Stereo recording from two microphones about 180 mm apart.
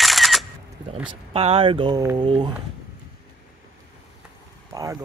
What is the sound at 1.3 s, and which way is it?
Speech, 35° right (ahead or behind).